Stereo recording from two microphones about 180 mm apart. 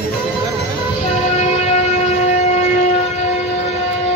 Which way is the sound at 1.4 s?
40° left (ahead or behind).